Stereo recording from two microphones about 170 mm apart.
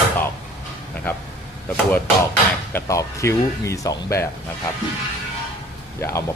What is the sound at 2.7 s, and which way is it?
Speech, 20° left (ahead or behind).